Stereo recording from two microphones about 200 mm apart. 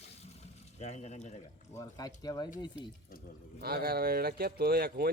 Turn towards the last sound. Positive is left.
turn(degrees=-50)  # may be behind; listen again after turning